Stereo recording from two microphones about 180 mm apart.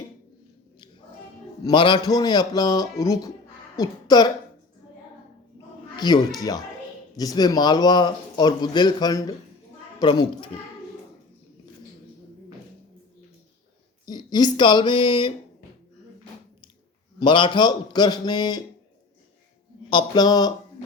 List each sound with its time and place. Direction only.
1.6 s speech: 25° left (ahead or behind)
6.0 s speech: 20° left (ahead or behind)
7.2 s speech: 20° left (ahead or behind)
14.0 s speech: 25° left (ahead or behind)
17.2 s speech: 25° left (ahead or behind)
19.9 s speech: 25° left (ahead or behind)